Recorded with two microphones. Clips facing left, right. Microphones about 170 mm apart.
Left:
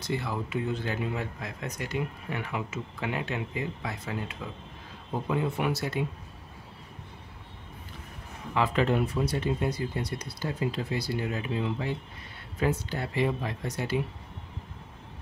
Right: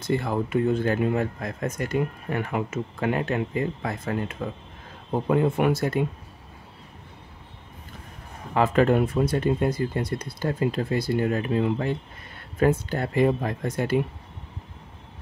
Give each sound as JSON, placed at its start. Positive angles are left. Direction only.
{"t": 0.0, "sound": "speech", "side_deg": -50}
{"t": 8.5, "sound": "speech", "side_deg": -50}